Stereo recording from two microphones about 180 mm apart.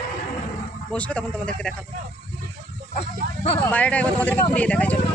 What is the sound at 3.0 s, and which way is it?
Speech, 35° left (ahead or behind).